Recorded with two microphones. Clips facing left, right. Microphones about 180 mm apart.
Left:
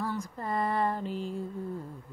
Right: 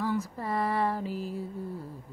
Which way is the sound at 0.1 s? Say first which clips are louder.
Right 3 dB; 5° right (ahead or behind).